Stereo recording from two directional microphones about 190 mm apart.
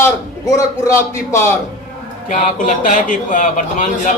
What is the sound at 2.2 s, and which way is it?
A man's voice, 40° left (ahead or behind).